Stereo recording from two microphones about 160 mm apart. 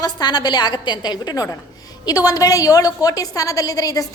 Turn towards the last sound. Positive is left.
turn(degrees=20)  # may be behind; listen again after turning